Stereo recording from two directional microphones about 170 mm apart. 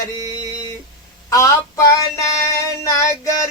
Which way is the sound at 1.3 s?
15° left (ahead or behind).